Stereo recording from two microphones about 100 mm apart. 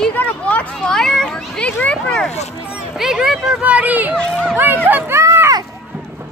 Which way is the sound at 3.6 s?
15° right (ahead or behind).